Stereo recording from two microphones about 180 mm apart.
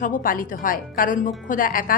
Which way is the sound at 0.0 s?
50° left (ahead or behind).